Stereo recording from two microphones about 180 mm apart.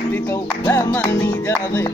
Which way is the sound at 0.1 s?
15° left (ahead or behind).